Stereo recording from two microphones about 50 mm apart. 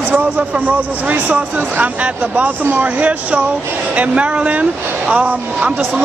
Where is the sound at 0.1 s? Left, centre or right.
Right.